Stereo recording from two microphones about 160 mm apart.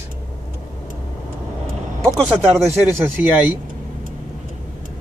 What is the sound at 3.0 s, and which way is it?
Speech, 10° right (ahead or behind).